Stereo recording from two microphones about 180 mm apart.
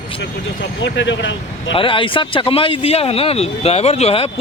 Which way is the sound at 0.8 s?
85° left.